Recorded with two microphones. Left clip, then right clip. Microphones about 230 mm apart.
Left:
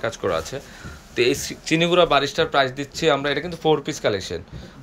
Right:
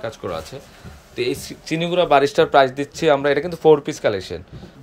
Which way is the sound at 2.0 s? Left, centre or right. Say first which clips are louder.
Right 5 dB; right.